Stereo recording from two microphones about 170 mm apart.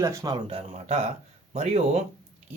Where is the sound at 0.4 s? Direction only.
40° right (ahead or behind).